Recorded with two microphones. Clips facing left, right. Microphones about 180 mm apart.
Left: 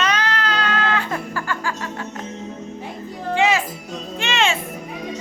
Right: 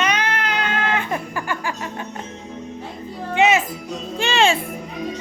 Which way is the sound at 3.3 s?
20° right (ahead or behind).